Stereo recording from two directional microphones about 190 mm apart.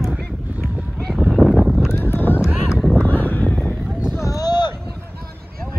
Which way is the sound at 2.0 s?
10° left (ahead or behind).